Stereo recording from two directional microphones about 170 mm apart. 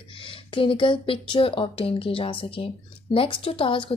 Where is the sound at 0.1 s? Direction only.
30° left (ahead or behind).